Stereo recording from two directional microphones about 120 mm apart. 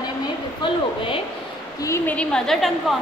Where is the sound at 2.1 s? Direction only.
10° left (ahead or behind).